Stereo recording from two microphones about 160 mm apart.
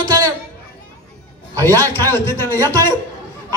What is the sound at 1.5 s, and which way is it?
A man's voice, 15° left (ahead or behind).